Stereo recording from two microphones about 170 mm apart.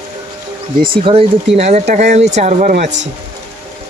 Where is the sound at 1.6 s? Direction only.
40° right (ahead or behind).